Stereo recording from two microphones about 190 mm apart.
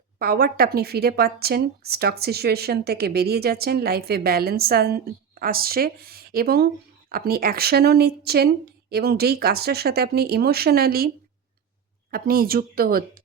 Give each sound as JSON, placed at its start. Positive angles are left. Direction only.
{"t": 0.2, "sound": "a woman's voice", "side_deg": -55}
{"t": 12.1, "sound": "speech", "side_deg": -50}